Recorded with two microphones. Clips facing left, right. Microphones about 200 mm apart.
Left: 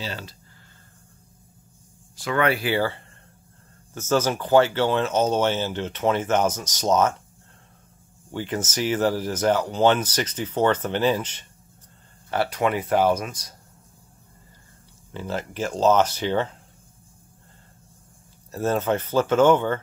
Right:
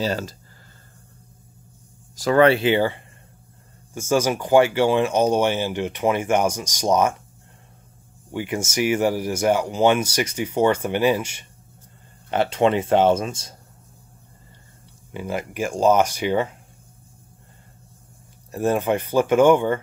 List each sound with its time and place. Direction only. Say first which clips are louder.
0.0 s speech: right 9 dB; 45° right (ahead or behind)
2.1 s speech: right 7 dB; 35° right (ahead or behind); by 7.2 s 10° right (ahead or behind)
8.3 s speech: right 2 dB; 10° right (ahead or behind)
12.3 s speech: right 4 dB; 25° right (ahead or behind)
15.1 s speech: right 2 dB; 10° right (ahead or behind)
18.5 s speech: right 2 dB; 15° right (ahead or behind)